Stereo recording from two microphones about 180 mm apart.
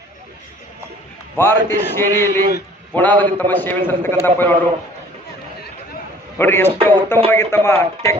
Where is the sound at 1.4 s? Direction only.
10° left (ahead or behind).